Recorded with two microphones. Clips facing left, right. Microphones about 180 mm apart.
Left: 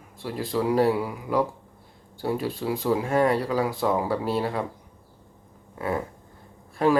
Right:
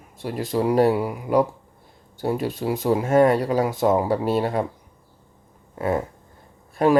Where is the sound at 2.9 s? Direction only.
35° right (ahead or behind).